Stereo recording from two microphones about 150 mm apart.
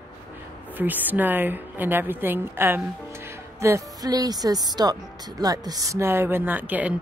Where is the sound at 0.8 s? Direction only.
10° right (ahead or behind).